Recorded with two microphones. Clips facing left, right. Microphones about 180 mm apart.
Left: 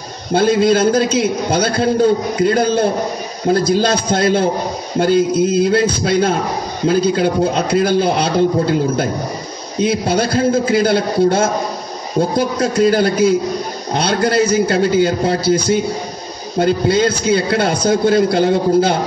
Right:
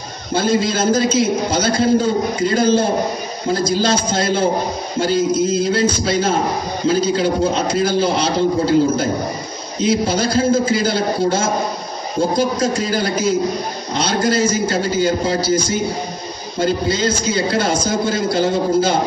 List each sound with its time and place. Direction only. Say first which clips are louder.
0.3 s a man's voice: left 5 dB; 60° left (ahead or behind)